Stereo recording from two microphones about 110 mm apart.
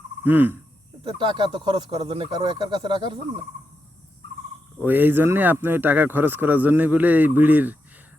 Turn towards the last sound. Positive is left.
turn(degrees=-15)  # may be behind; listen again after turning